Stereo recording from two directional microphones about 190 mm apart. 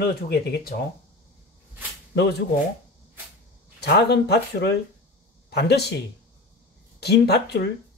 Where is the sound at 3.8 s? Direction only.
60° left (ahead or behind).